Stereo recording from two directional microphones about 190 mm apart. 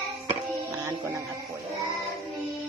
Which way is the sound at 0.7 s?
20° right (ahead or behind).